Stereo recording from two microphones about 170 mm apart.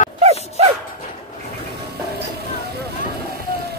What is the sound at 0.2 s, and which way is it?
Music, 40° right (ahead or behind).